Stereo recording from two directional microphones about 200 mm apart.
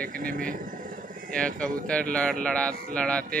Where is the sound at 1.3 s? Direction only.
5° left (ahead or behind).